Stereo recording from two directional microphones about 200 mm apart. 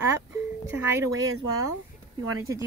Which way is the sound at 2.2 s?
90° right.